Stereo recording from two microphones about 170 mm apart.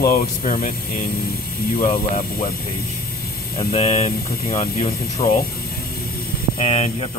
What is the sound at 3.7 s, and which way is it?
Speech, 35° left (ahead or behind).